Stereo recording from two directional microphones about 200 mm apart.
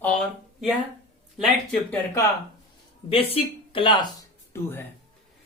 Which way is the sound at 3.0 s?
25° left (ahead or behind).